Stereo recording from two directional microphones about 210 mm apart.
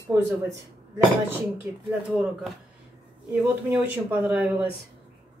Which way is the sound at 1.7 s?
10° right (ahead or behind).